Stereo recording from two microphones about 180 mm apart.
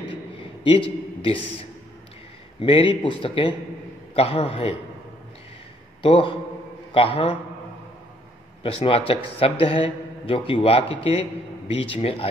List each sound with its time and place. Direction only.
0.7 s a man's voice: 30° left (ahead or behind)
6.0 s a man's voice: 30° left (ahead or behind)
8.6 s a man's voice: 30° left (ahead or behind)